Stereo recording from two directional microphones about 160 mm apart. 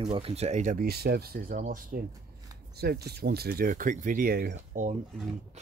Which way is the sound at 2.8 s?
80° right.